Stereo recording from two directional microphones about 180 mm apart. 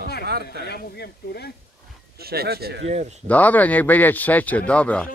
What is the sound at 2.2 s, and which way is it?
Speech, 60° right (ahead or behind).